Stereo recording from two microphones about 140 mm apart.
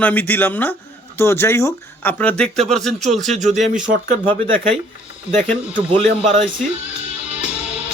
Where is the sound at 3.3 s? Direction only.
55° right (ahead or behind).